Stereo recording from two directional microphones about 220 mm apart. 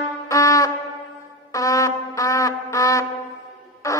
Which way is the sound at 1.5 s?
15° left (ahead or behind).